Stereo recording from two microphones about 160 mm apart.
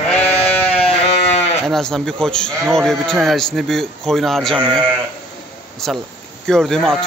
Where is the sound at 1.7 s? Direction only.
5° left (ahead or behind).